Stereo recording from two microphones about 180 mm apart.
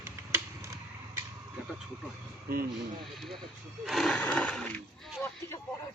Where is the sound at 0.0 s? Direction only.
15° right (ahead or behind).